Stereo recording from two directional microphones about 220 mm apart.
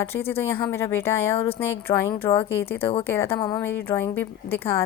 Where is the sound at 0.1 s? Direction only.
10° left (ahead or behind).